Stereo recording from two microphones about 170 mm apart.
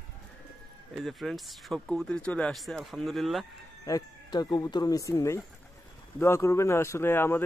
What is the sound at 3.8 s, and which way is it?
Speech, 20° left (ahead or behind).